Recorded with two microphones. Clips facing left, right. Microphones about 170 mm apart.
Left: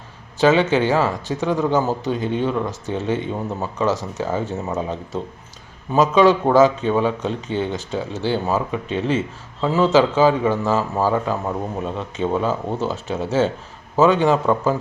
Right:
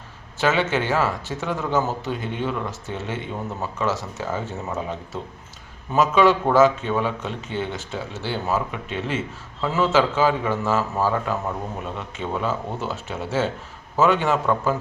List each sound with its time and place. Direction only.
0.3 s a man's voice: 15° left (ahead or behind)